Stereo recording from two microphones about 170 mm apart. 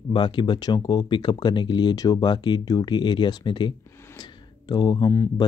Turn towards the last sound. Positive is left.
turn(degrees=20)  # may be behind; listen again after turning